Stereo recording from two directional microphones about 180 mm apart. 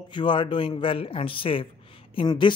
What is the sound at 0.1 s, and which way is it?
Speech, 25° left (ahead or behind).